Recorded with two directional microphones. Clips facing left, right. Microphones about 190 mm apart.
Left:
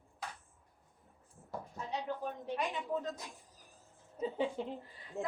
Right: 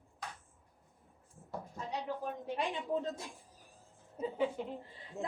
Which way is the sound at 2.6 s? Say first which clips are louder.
Right 2 dB; 30° right (ahead or behind).